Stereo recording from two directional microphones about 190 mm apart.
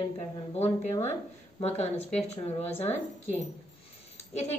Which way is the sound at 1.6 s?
35° left (ahead or behind).